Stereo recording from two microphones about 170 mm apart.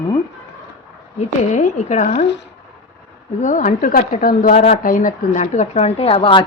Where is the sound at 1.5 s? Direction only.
45° left (ahead or behind).